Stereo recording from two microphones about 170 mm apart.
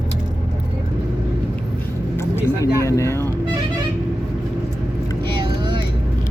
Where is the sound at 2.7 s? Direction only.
15° left (ahead or behind).